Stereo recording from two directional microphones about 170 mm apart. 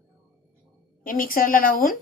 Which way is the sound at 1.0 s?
55° left (ahead or behind).